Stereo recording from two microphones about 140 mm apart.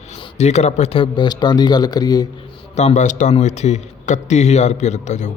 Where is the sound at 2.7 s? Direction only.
55° left (ahead or behind).